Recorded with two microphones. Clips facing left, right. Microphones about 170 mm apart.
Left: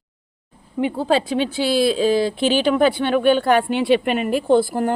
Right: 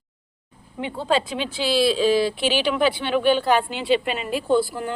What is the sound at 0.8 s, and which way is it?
Speech, 45° left (ahead or behind).